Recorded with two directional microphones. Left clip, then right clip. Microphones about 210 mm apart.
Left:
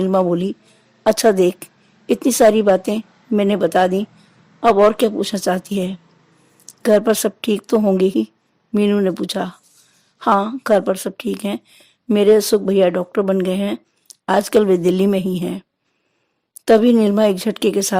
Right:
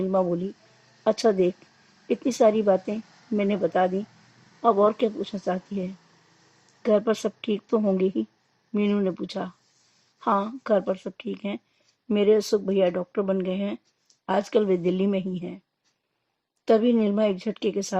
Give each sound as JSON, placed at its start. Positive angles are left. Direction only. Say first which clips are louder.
{"t": 0.0, "sound": "speech", "louder": "left 8 dB", "side_deg": 50}
{"t": 16.6, "sound": "speech", "louder": "left 8 dB", "side_deg": 50}